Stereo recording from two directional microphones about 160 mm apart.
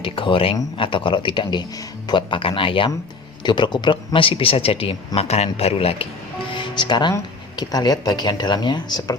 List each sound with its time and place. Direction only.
0.0 s speech: 35° left (ahead or behind)